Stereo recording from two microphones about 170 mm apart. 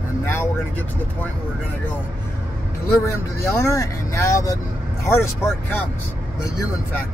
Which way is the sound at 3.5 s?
15° left (ahead or behind).